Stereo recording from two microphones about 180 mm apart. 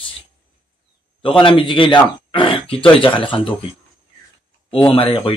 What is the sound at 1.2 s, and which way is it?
Speech, 30° left (ahead or behind).